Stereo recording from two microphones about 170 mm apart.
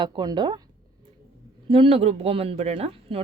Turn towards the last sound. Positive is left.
turn(degrees=-35)  # may be behind; listen again after turning